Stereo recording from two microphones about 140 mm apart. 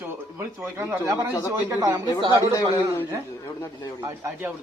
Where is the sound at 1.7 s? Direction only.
20° right (ahead or behind).